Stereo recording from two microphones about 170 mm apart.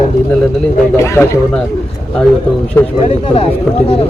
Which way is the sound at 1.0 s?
15° left (ahead or behind).